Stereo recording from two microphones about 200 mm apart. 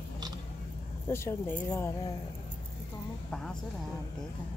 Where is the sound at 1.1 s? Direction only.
15° left (ahead or behind).